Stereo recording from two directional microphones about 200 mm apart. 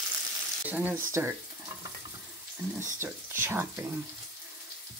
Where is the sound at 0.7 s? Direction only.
10° right (ahead or behind).